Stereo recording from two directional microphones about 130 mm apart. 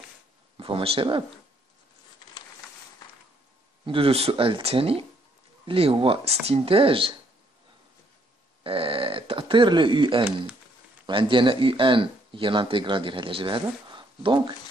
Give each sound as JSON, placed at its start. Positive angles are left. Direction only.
{"t": 0.6, "sound": "speech", "side_deg": -45}
{"t": 3.8, "sound": "speech", "side_deg": -45}
{"t": 8.6, "sound": "speech", "side_deg": -45}